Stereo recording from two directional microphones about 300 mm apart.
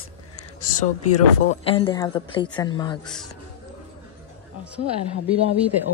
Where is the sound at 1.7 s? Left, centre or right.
Centre.